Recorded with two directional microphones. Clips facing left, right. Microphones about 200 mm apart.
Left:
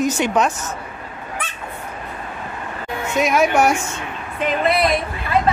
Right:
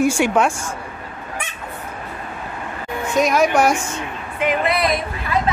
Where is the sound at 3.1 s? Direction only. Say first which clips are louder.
Even; 5° left (ahead or behind).